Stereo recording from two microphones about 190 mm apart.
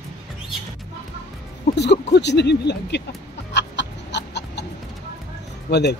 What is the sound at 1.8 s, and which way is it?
Speech, 60° left (ahead or behind).